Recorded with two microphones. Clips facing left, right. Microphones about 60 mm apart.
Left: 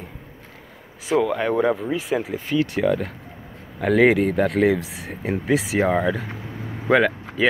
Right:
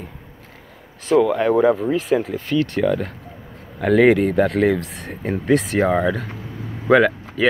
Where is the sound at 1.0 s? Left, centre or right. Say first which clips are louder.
Right 4 dB; centre.